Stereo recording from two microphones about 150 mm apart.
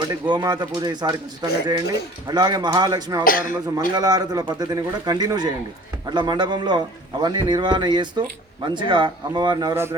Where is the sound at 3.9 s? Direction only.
25° right (ahead or behind).